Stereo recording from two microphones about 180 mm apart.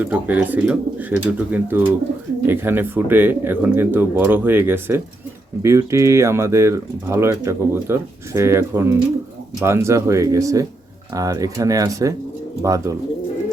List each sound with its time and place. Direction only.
0.0 s speech: 10° right (ahead or behind)